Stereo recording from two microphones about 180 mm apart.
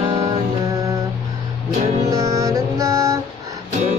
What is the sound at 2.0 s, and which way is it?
Music, 15° right (ahead or behind).